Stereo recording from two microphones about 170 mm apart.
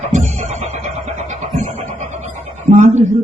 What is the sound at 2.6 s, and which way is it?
Speech, 45° right (ahead or behind).